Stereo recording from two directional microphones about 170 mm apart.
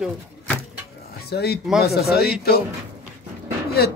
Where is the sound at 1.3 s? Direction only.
70° left (ahead or behind).